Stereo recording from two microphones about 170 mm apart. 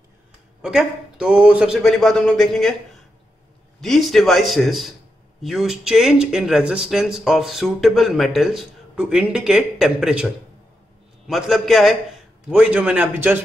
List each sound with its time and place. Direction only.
0.6 s speech: 5° right (ahead or behind)
3.8 s a man's voice: centre (ahead or behind)